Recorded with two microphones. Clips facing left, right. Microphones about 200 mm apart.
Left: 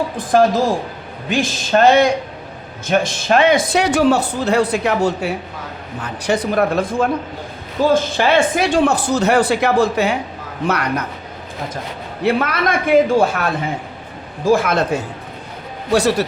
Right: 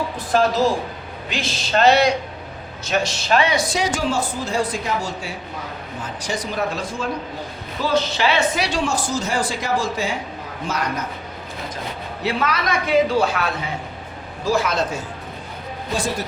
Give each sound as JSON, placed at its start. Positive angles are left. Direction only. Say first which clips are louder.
{"t": 0.2, "sound": "a man's voice", "louder": "left 4 dB", "side_deg": 50}
{"t": 12.2, "sound": "a man's voice", "louder": "left 6 dB", "side_deg": 55}
{"t": 15.9, "sound": "a man's voice", "louder": "left 9 dB", "side_deg": 70}